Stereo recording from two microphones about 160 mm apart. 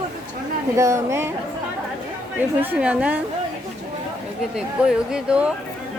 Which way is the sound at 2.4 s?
10° right (ahead or behind).